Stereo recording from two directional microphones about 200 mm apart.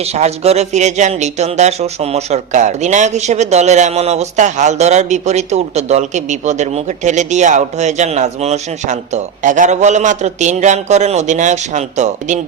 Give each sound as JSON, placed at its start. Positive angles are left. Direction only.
{"t": 0.0, "sound": "speech", "side_deg": -30}